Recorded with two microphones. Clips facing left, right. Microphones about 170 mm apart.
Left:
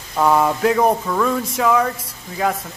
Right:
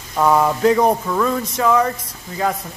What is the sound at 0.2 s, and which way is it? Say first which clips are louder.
A man's voice: right 1 dB; centre (ahead or behind).